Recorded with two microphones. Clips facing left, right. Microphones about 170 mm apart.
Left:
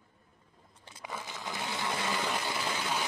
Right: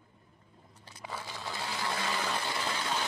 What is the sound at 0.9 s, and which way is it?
Sewing machine, 20° left (ahead or behind).